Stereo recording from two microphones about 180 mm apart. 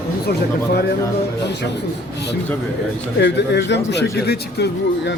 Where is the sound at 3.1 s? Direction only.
70° left (ahead or behind).